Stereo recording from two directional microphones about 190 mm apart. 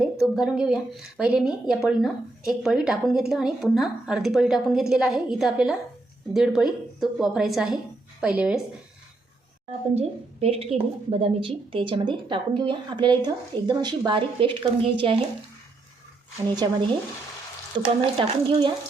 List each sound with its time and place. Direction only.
0.0 s a woman's voice: centre (ahead or behind)
10.0 s a woman's voice: 30° right (ahead or behind)
16.6 s a woman's voice: 20° right (ahead or behind)
18.0 s a woman's voice: 25° right (ahead or behind)